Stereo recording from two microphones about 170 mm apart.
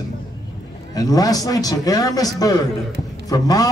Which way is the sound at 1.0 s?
20° left (ahead or behind).